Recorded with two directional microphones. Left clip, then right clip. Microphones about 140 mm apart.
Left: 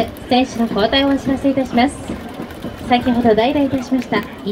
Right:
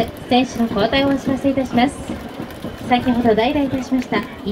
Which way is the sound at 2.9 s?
25° left (ahead or behind).